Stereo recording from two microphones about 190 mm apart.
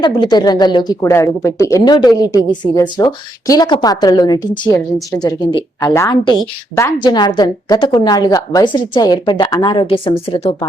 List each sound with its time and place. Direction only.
0.0 s a woman's voice: 20° left (ahead or behind)